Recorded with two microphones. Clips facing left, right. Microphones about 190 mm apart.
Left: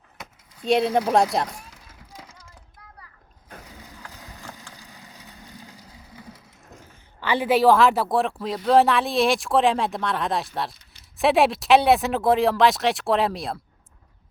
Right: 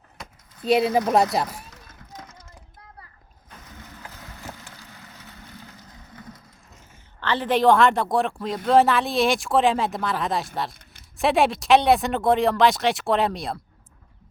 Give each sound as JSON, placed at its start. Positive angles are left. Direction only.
{"t": 0.2, "sound": "a sound", "side_deg": -5}
{"t": 1.1, "sound": "speech", "side_deg": -5}
{"t": 1.7, "sound": "run", "side_deg": 10}
{"t": 3.7, "sound": "vehicle", "side_deg": 15}
{"t": 11.2, "sound": "speech", "side_deg": 0}